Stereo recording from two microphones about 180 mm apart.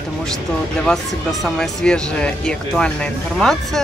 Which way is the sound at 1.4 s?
Centre (ahead or behind).